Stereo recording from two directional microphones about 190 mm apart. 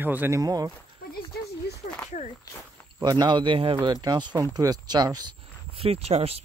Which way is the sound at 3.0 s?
20° right (ahead or behind).